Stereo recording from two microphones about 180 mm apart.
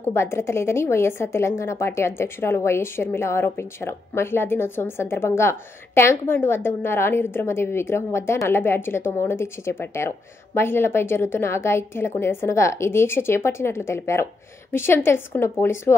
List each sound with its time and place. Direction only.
0.1 s a woman's voice: 15° left (ahead or behind)